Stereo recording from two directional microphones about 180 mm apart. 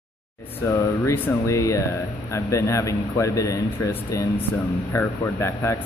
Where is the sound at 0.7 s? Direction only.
15° left (ahead or behind).